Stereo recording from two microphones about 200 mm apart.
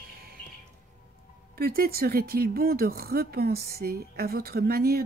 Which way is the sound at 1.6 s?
50° right (ahead or behind).